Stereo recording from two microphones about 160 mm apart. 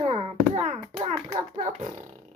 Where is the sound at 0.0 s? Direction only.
40° right (ahead or behind).